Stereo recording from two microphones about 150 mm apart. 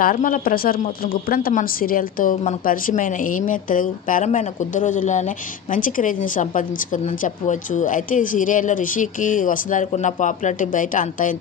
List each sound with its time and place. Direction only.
0.0 s speech: 65° left (ahead or behind)